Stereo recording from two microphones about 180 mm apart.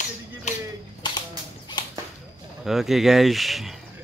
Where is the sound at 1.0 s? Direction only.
25° left (ahead or behind).